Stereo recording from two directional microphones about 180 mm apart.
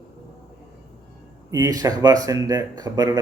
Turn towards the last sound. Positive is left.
turn(degrees=-20)  # may be behind; listen again after turning